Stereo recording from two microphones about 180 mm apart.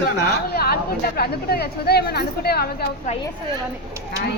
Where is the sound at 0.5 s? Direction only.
60° left (ahead or behind).